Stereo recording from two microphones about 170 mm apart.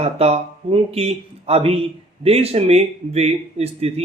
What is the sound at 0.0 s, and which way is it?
Speech, 35° right (ahead or behind).